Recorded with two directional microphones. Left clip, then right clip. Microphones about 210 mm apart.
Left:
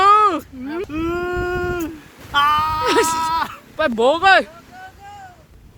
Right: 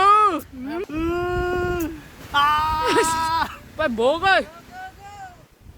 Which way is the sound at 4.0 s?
25° left (ahead or behind).